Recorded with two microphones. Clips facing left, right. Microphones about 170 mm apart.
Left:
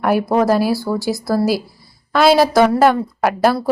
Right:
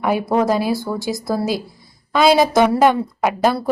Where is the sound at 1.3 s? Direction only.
5° left (ahead or behind).